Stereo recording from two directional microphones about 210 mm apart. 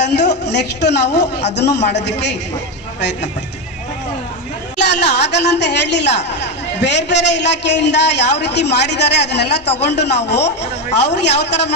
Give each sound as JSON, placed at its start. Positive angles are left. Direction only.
{"t": 0.0, "sound": "a woman's voice", "side_deg": 55}
{"t": 4.8, "sound": "a woman's voice", "side_deg": 55}